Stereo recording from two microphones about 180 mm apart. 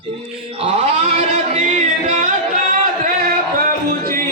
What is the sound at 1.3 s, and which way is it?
Music, 35° right (ahead or behind).